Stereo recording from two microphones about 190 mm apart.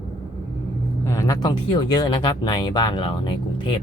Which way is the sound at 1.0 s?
20° left (ahead or behind).